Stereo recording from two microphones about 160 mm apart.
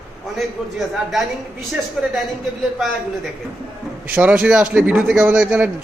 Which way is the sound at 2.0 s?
Centre (ahead or behind).